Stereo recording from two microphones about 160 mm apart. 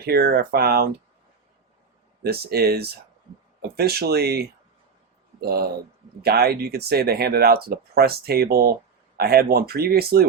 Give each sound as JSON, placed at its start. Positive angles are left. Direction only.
{"t": 0.0, "sound": "speech", "side_deg": -80}
{"t": 2.2, "sound": "speech", "side_deg": -75}